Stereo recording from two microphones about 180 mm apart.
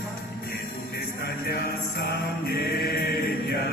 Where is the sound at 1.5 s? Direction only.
60° left (ahead or behind).